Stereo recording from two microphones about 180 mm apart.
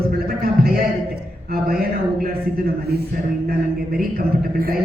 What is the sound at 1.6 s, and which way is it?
Speech, 55° right (ahead or behind).